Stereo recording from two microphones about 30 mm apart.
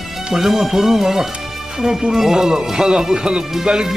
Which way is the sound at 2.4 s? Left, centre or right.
Centre.